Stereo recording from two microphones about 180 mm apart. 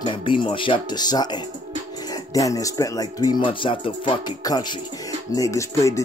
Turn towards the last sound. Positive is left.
turn(degrees=15)  # may be behind; listen again after turning